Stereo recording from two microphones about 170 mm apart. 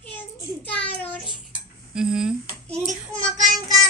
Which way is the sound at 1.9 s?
5° right (ahead or behind).